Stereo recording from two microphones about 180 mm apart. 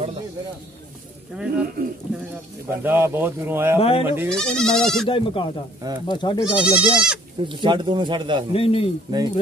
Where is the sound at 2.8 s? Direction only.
10° right (ahead or behind).